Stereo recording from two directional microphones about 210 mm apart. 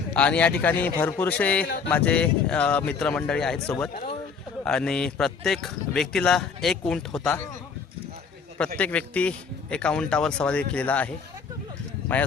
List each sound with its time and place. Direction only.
0.2 s a man's voice: 5° left (ahead or behind)
1.6 s speech: 50° left (ahead or behind)
1.9 s speech: 5° left (ahead or behind)
8.5 s speech: 5° left (ahead or behind)
12.1 s a man's voice: 5° left (ahead or behind)